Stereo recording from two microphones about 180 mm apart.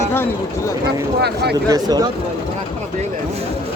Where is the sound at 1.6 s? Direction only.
20° right (ahead or behind).